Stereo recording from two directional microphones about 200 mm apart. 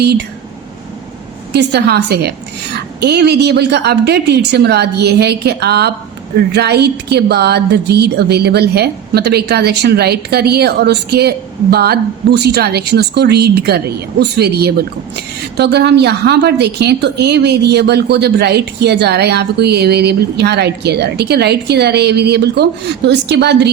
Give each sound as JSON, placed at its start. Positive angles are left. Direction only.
{"t": 0.0, "sound": "a woman's voice", "side_deg": -55}
{"t": 1.5, "sound": "a woman's voice", "side_deg": -55}